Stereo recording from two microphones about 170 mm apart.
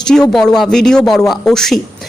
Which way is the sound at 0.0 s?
5° left (ahead or behind).